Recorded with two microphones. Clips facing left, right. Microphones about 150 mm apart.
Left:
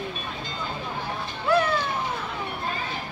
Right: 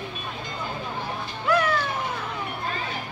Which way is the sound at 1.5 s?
30° left (ahead or behind).